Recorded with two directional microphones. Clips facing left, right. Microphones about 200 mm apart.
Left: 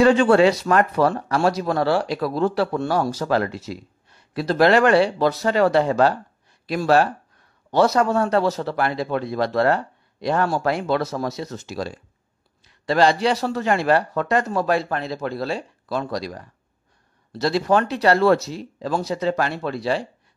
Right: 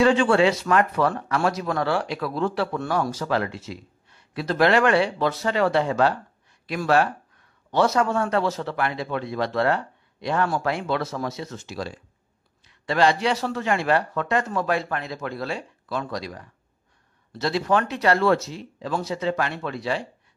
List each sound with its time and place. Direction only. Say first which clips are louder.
0.0 s a man's voice: left 4 dB; 40° left (ahead or behind)